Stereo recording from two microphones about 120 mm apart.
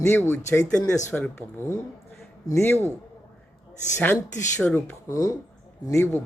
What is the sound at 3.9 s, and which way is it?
Speech, 20° left (ahead or behind).